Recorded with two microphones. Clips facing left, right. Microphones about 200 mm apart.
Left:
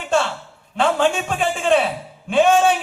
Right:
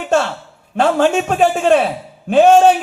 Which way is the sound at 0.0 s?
40° right (ahead or behind).